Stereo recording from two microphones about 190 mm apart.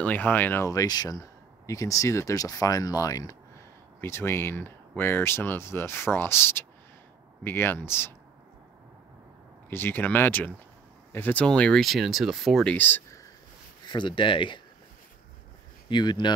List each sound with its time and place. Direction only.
0.0 s speech: 10° left (ahead or behind)
9.7 s speech: 10° left (ahead or behind)
13.8 s speech: 25° left (ahead or behind)
15.9 s speech: 25° left (ahead or behind)